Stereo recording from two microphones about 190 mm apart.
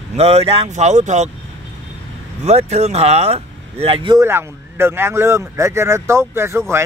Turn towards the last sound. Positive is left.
turn(degrees=-15)  # may be behind; listen again after turning